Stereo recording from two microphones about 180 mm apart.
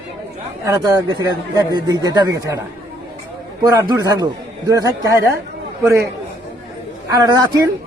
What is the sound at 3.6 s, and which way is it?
A man's voice, 20° right (ahead or behind).